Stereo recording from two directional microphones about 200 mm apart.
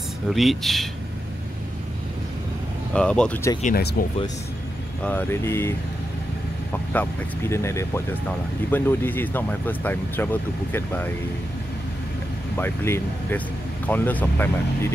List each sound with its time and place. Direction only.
0.3 s speech: centre (ahead or behind)
2.9 s speech: 5° left (ahead or behind)
3.6 s speech: 50° left (ahead or behind)
5.0 s speech: 10° left (ahead or behind)
6.9 s speech: 10° left (ahead or behind)
12.5 s speech: 10° left (ahead or behind)